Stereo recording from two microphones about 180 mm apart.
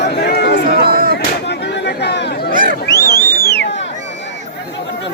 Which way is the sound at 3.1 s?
55° left (ahead or behind).